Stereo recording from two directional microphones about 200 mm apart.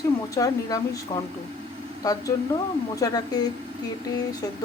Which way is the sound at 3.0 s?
20° left (ahead or behind).